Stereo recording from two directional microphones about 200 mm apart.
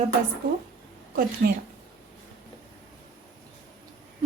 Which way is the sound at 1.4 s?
50° right (ahead or behind).